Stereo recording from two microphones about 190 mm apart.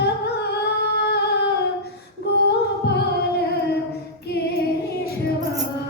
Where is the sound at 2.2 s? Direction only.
60° left (ahead or behind).